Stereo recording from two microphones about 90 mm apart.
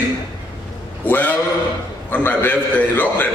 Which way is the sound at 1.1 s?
20° left (ahead or behind).